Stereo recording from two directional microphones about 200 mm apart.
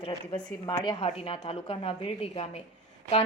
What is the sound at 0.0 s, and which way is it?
A woman's voice, 25° left (ahead or behind).